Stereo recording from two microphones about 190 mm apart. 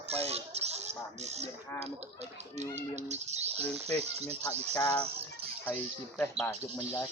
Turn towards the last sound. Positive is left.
turn(degrees=15)  # may be behind; listen again after turning